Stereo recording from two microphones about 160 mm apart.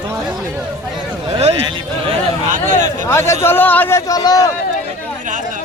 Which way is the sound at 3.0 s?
15° left (ahead or behind).